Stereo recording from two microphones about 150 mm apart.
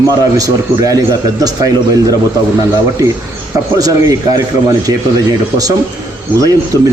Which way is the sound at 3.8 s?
25° right (ahead or behind).